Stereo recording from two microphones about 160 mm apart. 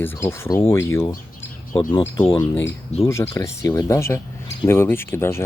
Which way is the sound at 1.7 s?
30° left (ahead or behind).